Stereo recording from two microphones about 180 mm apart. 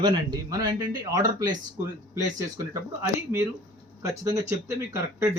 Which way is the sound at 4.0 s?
20° right (ahead or behind).